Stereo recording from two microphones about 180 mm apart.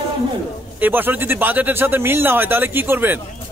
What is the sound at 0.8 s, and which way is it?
A man's voice, 10° right (ahead or behind).